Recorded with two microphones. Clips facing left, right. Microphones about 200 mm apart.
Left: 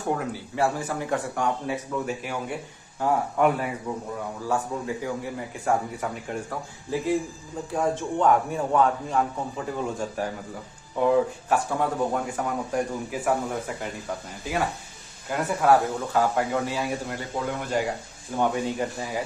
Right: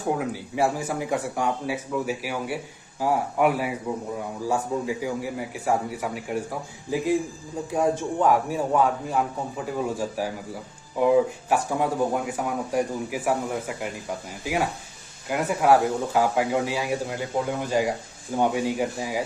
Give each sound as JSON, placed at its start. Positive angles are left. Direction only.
{"t": 0.0, "sound": "speech", "side_deg": -5}
{"t": 7.7, "sound": "a man's voice", "side_deg": -10}